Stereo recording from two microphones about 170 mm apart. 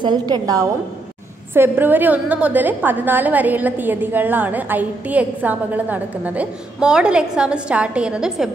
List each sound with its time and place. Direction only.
0.0 s a woman's voice: 25° right (ahead or behind); by 8.5 s 5° right (ahead or behind)